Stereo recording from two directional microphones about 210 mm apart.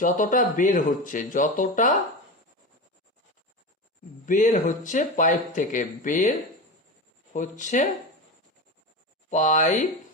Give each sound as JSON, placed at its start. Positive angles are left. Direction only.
{"t": 0.0, "sound": "speech", "side_deg": 40}
{"t": 4.3, "sound": "speech", "side_deg": 35}
{"t": 7.3, "sound": "speech", "side_deg": 35}
{"t": 9.3, "sound": "speech", "side_deg": 35}